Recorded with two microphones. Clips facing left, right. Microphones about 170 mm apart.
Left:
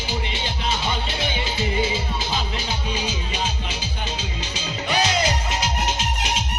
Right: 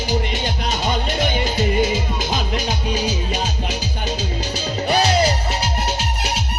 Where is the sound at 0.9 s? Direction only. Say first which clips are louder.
Right 6 dB; 45° right (ahead or behind).